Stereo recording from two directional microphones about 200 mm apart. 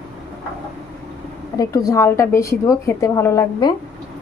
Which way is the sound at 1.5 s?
15° left (ahead or behind).